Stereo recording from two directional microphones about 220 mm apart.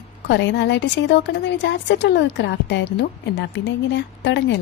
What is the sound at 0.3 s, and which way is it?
Speech, 55° left (ahead or behind).